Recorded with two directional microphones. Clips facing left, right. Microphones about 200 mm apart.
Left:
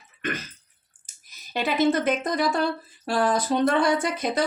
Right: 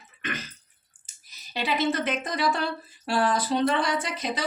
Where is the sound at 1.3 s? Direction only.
50° left (ahead or behind).